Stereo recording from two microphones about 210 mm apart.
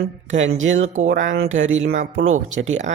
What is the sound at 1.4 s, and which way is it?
Speech, 65° right (ahead or behind).